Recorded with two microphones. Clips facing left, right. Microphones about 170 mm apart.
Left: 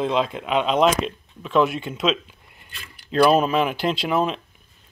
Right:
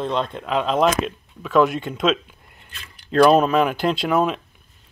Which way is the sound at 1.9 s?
50° right (ahead or behind).